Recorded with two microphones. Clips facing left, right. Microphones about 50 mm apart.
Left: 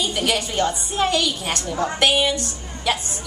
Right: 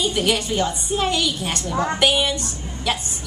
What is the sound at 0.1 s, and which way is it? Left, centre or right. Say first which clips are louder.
A woman's voice: right 2 dB; centre.